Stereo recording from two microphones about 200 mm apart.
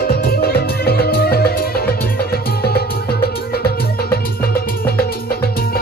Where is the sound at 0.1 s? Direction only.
50° left (ahead or behind).